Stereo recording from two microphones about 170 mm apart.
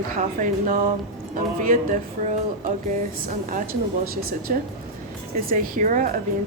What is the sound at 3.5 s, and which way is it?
A woman's voice, 60° right (ahead or behind).